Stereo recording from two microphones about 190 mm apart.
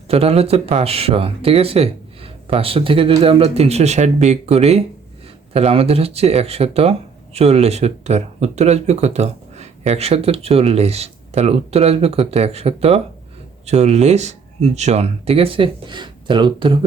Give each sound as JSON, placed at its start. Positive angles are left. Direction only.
{"t": 0.1, "sound": "speech", "side_deg": -30}